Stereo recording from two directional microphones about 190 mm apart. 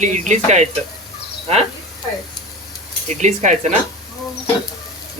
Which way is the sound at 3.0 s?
40° right (ahead or behind).